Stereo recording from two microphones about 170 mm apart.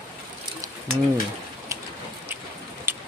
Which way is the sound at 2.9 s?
15° right (ahead or behind).